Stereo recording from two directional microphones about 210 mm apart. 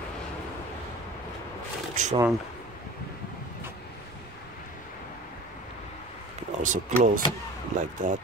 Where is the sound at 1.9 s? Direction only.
35° right (ahead or behind).